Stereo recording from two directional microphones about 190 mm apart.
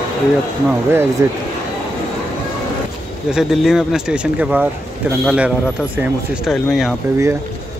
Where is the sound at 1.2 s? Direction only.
15° right (ahead or behind).